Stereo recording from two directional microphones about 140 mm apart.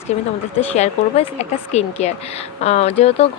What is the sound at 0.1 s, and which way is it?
Speech, 50° left (ahead or behind).